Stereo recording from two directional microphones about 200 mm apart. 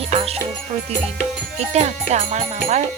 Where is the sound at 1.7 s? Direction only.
35° right (ahead or behind).